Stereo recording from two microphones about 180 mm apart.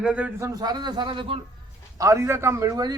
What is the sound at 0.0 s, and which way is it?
A man's voice, 5° right (ahead or behind).